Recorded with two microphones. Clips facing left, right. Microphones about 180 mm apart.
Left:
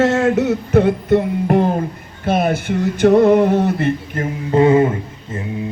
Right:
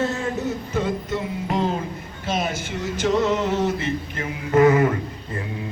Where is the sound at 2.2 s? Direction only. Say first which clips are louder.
Left 9 dB; 55° left (ahead or behind).